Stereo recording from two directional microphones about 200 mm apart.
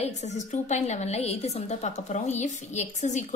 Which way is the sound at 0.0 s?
35° left (ahead or behind).